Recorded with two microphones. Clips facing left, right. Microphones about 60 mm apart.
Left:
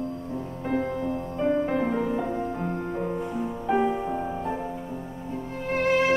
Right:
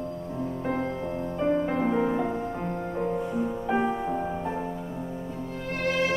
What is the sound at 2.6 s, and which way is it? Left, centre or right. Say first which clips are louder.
Music: even; centre.